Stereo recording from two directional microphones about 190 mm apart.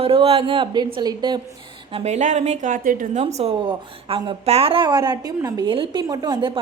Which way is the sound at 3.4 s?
30° right (ahead or behind).